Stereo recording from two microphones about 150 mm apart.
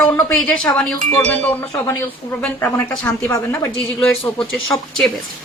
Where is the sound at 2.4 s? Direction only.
15° left (ahead or behind).